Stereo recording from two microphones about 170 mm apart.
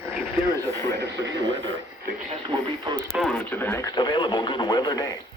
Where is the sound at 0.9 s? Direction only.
90° right.